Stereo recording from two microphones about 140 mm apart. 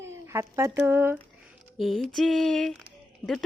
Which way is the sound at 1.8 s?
Centre (ahead or behind).